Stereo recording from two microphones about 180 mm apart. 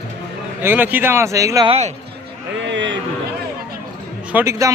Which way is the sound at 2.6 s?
85° right.